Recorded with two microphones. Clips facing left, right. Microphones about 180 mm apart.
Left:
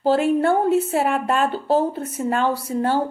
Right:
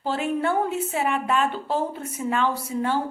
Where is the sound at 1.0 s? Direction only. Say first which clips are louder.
Left 3 dB; 45° left (ahead or behind).